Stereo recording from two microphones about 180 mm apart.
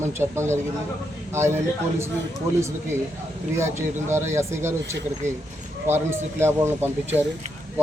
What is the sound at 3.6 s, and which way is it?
A man's voice, 15° right (ahead or behind).